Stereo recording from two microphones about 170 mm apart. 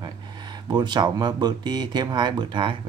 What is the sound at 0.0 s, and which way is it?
Speech, 25° right (ahead or behind).